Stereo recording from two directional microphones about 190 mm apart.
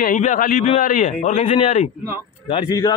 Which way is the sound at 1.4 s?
35° left (ahead or behind).